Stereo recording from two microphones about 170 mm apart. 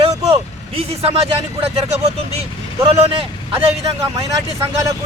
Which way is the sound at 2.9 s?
35° right (ahead or behind).